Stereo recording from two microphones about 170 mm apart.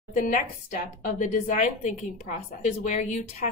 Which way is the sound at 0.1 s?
50° left (ahead or behind).